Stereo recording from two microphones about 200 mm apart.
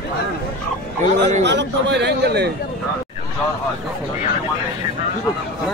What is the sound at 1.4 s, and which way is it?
Speech, 60° right (ahead or behind).